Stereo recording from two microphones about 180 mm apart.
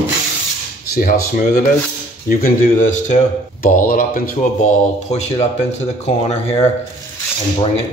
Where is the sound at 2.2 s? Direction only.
45° left (ahead or behind).